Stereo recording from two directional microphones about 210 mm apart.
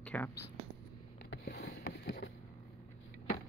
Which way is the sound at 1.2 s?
55° left (ahead or behind).